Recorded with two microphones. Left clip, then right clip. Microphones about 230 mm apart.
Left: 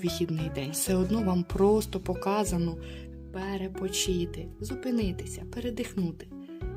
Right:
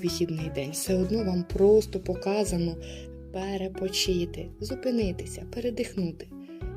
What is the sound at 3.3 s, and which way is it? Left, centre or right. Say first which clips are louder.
Speech: right 3 dB; centre.